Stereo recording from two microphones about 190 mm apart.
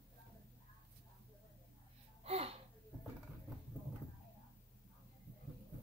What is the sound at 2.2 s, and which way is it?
Gasp, 30° right (ahead or behind).